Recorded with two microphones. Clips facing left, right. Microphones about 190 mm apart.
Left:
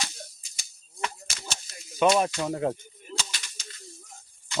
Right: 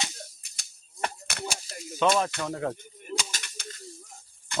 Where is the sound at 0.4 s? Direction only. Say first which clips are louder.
Left 1 dB; 60° right (ahead or behind).